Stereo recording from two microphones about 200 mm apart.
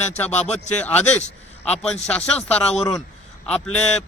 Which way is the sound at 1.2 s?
35° left (ahead or behind).